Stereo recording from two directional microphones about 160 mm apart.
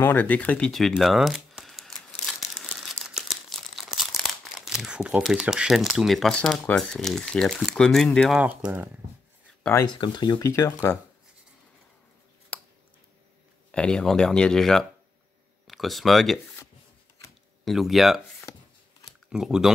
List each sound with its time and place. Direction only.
0.0 s speech: 10° left (ahead or behind)
2.5 s crumpling: centre (ahead or behind)
8.4 s speech: 10° right (ahead or behind)
9.9 s speech: 30° left (ahead or behind)
12.5 s a sound: 10° left (ahead or behind)
13.7 s speech: 5° left (ahead or behind)
17.6 s speech: centre (ahead or behind)
18.5 s a sound: 25° left (ahead or behind)
19.2 s speech: 5° right (ahead or behind)